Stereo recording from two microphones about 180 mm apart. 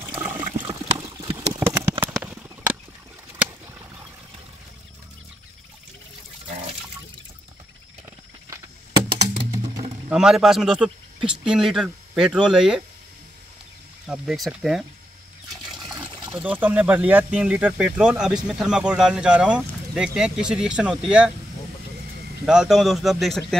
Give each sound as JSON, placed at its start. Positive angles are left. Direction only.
{"t": 0.6, "sound": "a sound", "side_deg": -20}
{"t": 1.6, "sound": "clip-clop", "side_deg": -10}
{"t": 2.1, "sound": "a sound", "side_deg": -10}
{"t": 10.0, "sound": "speech", "side_deg": -5}
{"t": 14.0, "sound": "speech", "side_deg": -5}
{"t": 15.8, "sound": "water", "side_deg": -25}
{"t": 16.3, "sound": "speech", "side_deg": -10}
{"t": 22.5, "sound": "speech", "side_deg": -5}